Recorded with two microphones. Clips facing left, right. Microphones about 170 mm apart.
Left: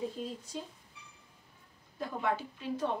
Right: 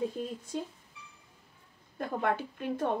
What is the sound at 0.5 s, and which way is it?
Speech, 55° right (ahead or behind).